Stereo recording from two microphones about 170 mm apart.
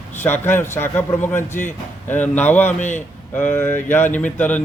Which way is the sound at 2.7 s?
45° left (ahead or behind).